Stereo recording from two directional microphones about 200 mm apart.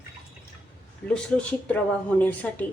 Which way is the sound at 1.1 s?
5° left (ahead or behind).